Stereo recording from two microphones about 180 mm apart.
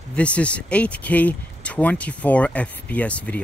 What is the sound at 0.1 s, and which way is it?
Speech, 5° left (ahead or behind).